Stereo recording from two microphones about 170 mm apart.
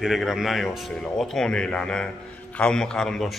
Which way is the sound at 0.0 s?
Centre (ahead or behind).